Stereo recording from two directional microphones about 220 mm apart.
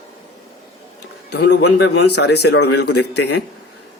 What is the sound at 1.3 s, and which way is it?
Speech, 50° left (ahead or behind).